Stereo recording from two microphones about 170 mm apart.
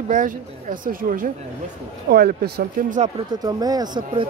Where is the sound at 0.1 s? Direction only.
50° right (ahead or behind).